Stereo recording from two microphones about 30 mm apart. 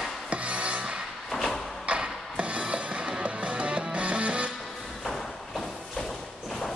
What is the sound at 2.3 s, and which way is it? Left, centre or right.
Music, right.